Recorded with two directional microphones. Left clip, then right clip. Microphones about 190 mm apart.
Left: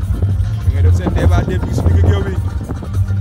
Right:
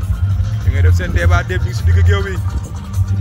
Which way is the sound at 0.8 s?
10° left (ahead or behind).